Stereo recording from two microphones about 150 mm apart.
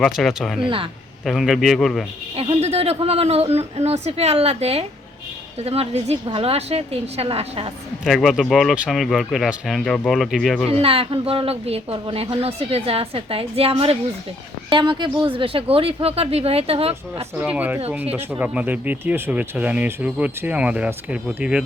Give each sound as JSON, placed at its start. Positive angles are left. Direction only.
{"t": 0.0, "sound": "speech", "side_deg": 0}
{"t": 2.3, "sound": "speech", "side_deg": -40}
{"t": 8.0, "sound": "speech", "side_deg": 0}
{"t": 10.7, "sound": "speech", "side_deg": -40}
{"t": 17.4, "sound": "speech", "side_deg": -10}